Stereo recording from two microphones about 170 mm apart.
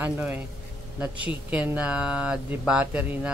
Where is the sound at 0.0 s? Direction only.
10° right (ahead or behind).